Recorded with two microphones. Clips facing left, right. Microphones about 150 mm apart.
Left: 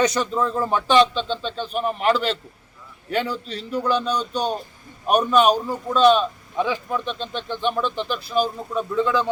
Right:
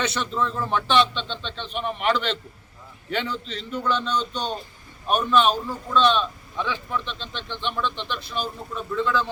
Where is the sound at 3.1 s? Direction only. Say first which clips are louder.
Left 4 dB; 40° left (ahead or behind).